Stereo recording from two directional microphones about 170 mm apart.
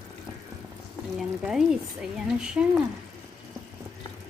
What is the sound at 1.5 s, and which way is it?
Speech, 5° right (ahead or behind).